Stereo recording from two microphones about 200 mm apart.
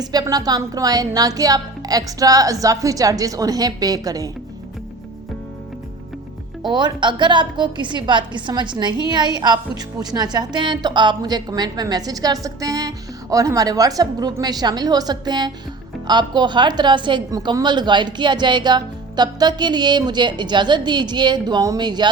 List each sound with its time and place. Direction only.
0.0 s a woman's voice: 20° right (ahead or behind)
6.6 s a woman's voice: 20° right (ahead or behind)